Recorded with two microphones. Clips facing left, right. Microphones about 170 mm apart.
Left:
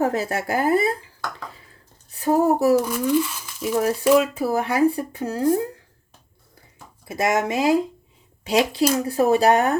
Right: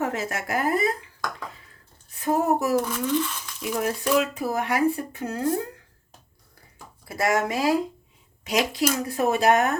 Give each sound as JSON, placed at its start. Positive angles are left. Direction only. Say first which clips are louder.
{"t": 0.0, "sound": "speech", "louder": "left 5 dB", "side_deg": 35}
{"t": 2.2, "sound": "speech", "louder": "left 5 dB", "side_deg": 30}
{"t": 2.7, "sound": "speech", "louder": "left 4 dB", "side_deg": 10}
{"t": 3.6, "sound": "speech", "louder": "left 6 dB", "side_deg": 30}
{"t": 7.1, "sound": "speech", "louder": "left 2 dB", "side_deg": 20}